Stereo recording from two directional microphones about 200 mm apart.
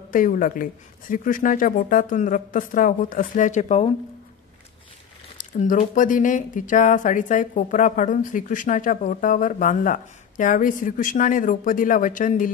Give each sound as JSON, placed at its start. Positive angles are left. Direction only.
{"t": 0.1, "sound": "speech", "side_deg": 45}
{"t": 5.4, "sound": "speech", "side_deg": 40}